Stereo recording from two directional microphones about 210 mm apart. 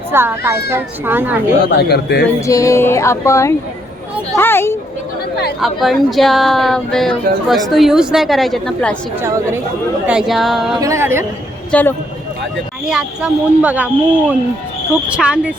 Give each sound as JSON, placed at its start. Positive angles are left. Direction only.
{"t": 0.1, "sound": "speech", "side_deg": -10}
{"t": 1.6, "sound": "a man's voice", "side_deg": 50}
{"t": 2.5, "sound": "speech", "side_deg": 15}
{"t": 5.5, "sound": "speech", "side_deg": 0}
{"t": 10.1, "sound": "speech", "side_deg": 0}
{"t": 10.8, "sound": "speech", "side_deg": -15}
{"t": 11.7, "sound": "speech", "side_deg": 10}
{"t": 12.8, "sound": "speech", "side_deg": -5}